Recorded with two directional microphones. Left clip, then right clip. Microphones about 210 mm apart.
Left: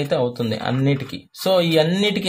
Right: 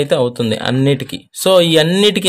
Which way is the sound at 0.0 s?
40° right (ahead or behind).